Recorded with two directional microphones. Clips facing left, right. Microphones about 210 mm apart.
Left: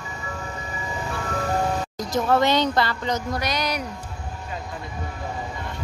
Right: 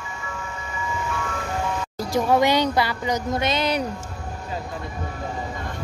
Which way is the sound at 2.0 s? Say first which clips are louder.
Right 2 dB; 10° right (ahead or behind).